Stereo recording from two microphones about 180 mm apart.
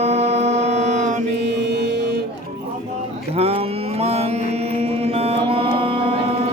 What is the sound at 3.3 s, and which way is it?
Mantra, 35° right (ahead or behind).